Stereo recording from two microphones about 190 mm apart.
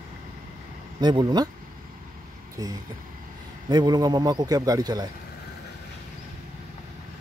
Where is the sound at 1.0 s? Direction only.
20° right (ahead or behind).